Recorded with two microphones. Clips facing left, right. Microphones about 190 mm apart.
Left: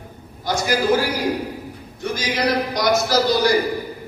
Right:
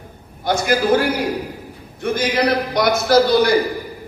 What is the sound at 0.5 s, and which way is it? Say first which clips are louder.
Speech: right 4 dB; 55° right (ahead or behind).